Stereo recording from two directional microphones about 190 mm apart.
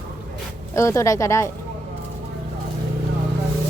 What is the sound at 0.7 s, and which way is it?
Speech, 15° left (ahead or behind).